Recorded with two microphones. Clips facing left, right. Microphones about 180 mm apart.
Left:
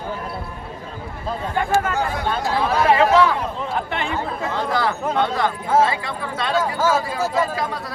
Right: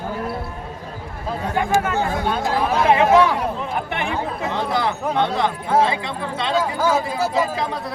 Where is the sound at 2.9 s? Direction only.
20° right (ahead or behind).